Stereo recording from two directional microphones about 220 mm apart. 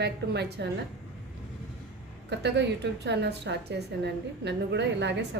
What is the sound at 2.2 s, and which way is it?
A woman's voice, 50° right (ahead or behind).